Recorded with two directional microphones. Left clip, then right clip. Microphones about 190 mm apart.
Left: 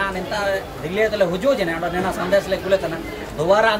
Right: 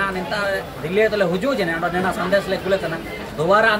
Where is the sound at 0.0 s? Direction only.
5° left (ahead or behind).